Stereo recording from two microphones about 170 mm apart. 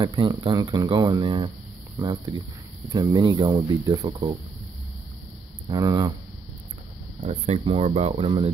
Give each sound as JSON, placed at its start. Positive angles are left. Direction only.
{"t": 0.0, "sound": "speech", "side_deg": -25}
{"t": 5.7, "sound": "speech", "side_deg": -25}
{"t": 7.2, "sound": "speech", "side_deg": -40}